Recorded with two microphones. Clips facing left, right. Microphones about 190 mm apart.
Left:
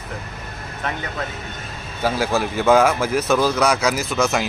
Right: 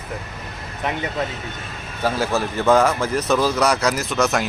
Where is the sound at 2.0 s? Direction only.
5° left (ahead or behind).